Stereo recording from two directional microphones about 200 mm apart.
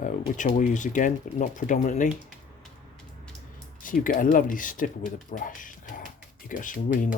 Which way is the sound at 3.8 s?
45° left (ahead or behind).